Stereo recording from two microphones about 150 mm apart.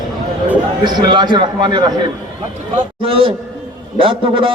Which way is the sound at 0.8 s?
30° right (ahead or behind).